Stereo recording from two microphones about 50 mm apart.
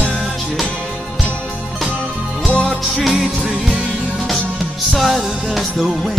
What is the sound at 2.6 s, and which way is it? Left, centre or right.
Music, centre.